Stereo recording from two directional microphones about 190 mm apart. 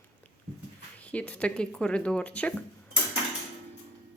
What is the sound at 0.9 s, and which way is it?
Speech, 5° left (ahead or behind).